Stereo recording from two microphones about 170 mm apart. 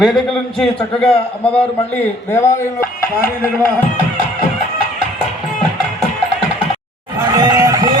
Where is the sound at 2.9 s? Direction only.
60° left (ahead or behind).